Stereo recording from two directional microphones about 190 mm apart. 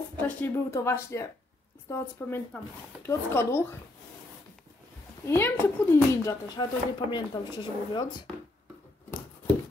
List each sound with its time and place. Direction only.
0.4 s speech: 15° left (ahead or behind)
5.2 s speech: 15° left (ahead or behind)